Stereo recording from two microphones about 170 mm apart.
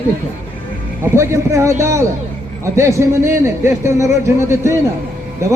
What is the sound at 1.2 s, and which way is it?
A man's voice, 15° right (ahead or behind).